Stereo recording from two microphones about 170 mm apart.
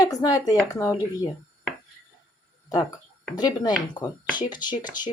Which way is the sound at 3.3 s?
25° left (ahead or behind).